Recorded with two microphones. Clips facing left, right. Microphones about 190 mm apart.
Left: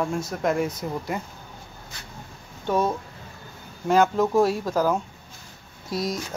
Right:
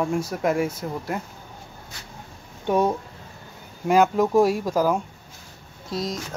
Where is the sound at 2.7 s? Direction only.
15° right (ahead or behind).